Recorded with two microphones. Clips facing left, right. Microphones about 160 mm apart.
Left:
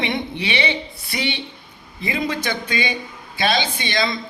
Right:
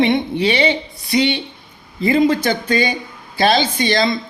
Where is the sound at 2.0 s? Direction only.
45° right (ahead or behind).